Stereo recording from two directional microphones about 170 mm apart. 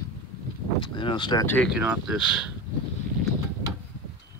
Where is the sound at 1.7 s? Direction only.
5° right (ahead or behind).